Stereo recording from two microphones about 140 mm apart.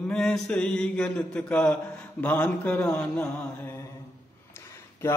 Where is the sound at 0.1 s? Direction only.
5° left (ahead or behind).